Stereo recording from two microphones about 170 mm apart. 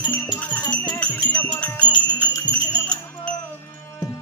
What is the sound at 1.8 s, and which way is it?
Music, 25° left (ahead or behind).